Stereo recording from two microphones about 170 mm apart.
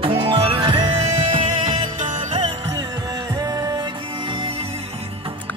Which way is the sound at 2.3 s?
25° right (ahead or behind).